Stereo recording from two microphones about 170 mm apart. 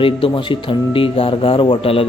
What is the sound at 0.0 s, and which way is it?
Speech, 30° left (ahead or behind).